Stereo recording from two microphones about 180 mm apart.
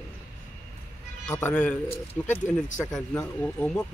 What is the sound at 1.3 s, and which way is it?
Speech, 10° left (ahead or behind).